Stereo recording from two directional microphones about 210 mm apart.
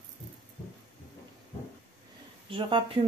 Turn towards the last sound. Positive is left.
turn(degrees=-25)  # may be behind; listen again after turning